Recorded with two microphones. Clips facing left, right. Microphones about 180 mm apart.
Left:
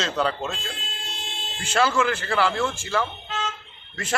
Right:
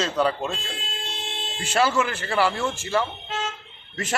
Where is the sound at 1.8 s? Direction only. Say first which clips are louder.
Even; 15° right (ahead or behind).